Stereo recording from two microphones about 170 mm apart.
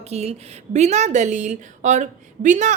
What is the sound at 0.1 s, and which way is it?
Speech, 40° right (ahead or behind).